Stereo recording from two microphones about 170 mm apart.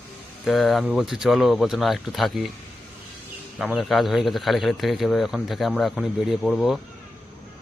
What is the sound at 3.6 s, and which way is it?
Speech, centre (ahead or behind).